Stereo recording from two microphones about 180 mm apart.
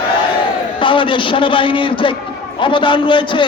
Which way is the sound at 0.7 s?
30° left (ahead or behind).